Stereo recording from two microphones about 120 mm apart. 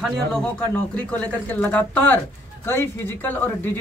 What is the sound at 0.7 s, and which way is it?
A man's voice, 10° left (ahead or behind).